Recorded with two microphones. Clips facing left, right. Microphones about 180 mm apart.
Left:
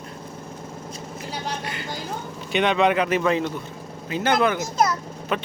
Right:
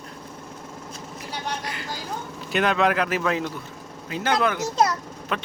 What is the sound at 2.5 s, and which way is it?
Speech, centre (ahead or behind).